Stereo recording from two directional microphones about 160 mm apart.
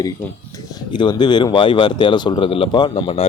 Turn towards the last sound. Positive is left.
turn(degrees=35)  # may be behind; listen again after turning